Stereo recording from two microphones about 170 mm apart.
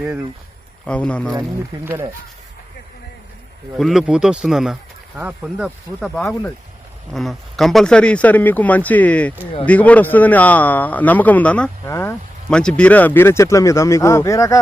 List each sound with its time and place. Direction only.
0.9 s speech: 5° left (ahead or behind)
1.4 s speech: 15° right (ahead or behind)
3.8 s speech: centre (ahead or behind)
6.1 s speech: 10° left (ahead or behind)